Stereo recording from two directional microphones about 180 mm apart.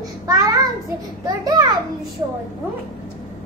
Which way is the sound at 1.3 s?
20° right (ahead or behind).